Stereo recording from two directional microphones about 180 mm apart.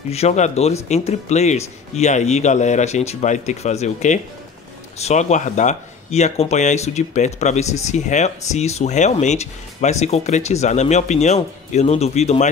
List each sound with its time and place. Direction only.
0.1 s speech: 35° left (ahead or behind)